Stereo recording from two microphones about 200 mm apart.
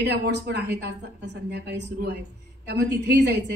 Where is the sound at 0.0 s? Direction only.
55° right (ahead or behind).